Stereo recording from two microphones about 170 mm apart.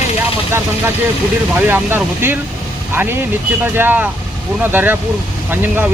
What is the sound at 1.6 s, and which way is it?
Speech, 10° right (ahead or behind).